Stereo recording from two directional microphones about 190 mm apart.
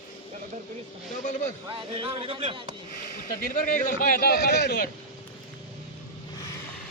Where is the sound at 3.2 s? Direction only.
45° left (ahead or behind).